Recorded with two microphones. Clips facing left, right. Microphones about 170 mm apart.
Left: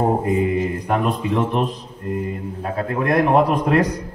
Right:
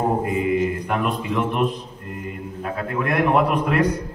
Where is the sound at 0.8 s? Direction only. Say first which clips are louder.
Left 3 dB; 35° left (ahead or behind).